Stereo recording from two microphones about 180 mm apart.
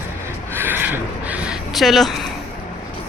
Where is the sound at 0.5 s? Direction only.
10° right (ahead or behind).